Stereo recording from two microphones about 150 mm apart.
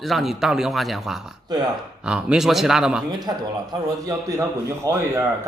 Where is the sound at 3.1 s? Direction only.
30° right (ahead or behind).